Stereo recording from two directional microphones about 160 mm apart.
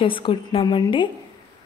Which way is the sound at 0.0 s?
30° left (ahead or behind).